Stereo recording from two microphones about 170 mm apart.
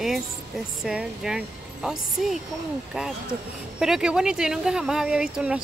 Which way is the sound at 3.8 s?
5° right (ahead or behind).